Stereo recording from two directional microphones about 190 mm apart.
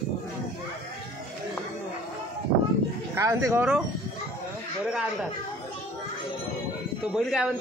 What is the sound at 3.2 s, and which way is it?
Wind chime, 15° right (ahead or behind).